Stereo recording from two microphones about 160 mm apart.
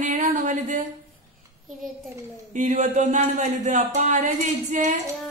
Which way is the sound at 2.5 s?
50° right (ahead or behind).